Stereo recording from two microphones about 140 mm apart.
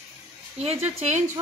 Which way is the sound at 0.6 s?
45° right (ahead or behind).